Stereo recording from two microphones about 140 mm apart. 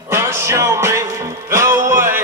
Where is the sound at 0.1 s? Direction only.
20° right (ahead or behind).